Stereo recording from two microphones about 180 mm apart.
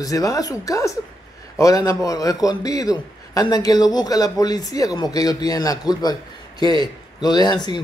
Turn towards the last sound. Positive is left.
turn(degrees=20)  # may be behind; listen again after turning